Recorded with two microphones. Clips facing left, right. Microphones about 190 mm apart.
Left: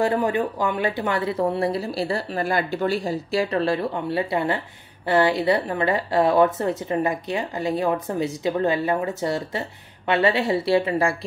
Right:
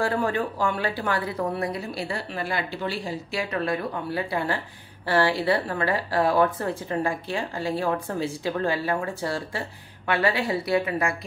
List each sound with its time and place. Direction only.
0.0 s a woman's voice: 20° left (ahead or behind)